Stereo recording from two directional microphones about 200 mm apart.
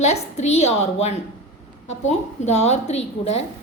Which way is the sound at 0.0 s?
35° left (ahead or behind).